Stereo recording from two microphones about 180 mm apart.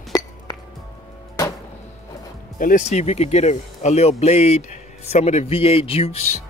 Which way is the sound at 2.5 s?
45° left (ahead or behind).